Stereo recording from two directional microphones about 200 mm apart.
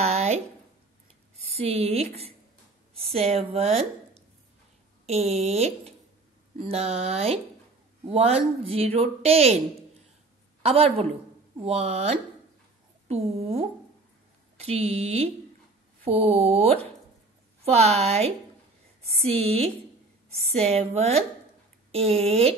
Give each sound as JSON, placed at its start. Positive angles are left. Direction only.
{"t": 0.0, "sound": "a sound", "side_deg": -35}
{"t": 1.5, "sound": "a woman's voice", "side_deg": -30}
{"t": 10.6, "sound": "a woman's voice", "side_deg": -30}